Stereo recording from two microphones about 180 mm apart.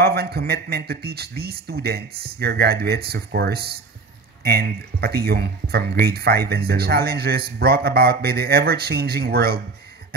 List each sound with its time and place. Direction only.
0.0 s speech: 60° right (ahead or behind)